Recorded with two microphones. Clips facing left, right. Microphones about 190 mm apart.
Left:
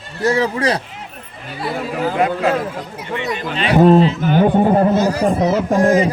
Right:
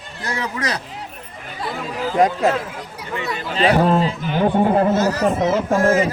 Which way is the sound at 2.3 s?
45° left (ahead or behind).